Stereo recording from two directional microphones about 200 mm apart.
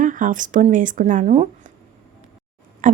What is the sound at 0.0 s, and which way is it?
Speech, 40° right (ahead or behind).